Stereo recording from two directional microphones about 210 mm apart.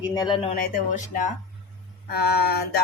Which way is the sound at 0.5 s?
40° left (ahead or behind).